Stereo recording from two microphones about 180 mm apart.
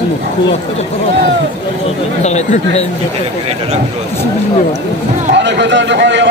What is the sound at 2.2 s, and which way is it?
Speech, 40° left (ahead or behind).